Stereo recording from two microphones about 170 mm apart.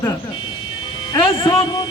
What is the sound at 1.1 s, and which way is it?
Speech, 30° left (ahead or behind).